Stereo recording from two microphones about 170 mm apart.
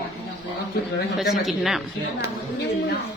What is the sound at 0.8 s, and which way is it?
Speech, 65° left (ahead or behind).